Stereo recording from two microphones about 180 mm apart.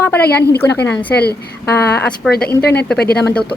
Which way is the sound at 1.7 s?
10° left (ahead or behind).